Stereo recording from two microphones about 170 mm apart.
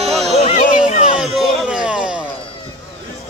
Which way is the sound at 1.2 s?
Centre (ahead or behind).